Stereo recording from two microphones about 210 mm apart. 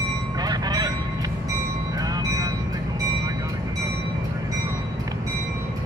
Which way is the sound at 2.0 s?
15° right (ahead or behind).